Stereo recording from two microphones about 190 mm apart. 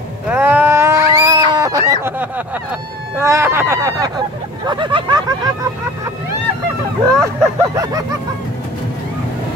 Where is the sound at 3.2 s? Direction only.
15° right (ahead or behind).